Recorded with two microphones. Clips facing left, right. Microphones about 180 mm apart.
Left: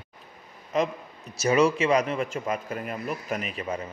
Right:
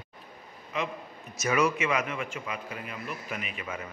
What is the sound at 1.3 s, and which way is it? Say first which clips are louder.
A man's voice: left 5 dB; 30° left (ahead or behind).